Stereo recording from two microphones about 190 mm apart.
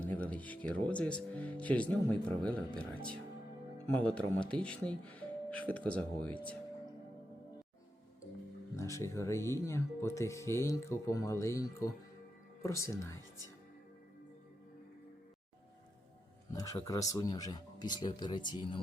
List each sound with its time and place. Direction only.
0.0 s speech: 5° left (ahead or behind)
8.7 s speech: 15° left (ahead or behind)
16.5 s speech: 15° left (ahead or behind)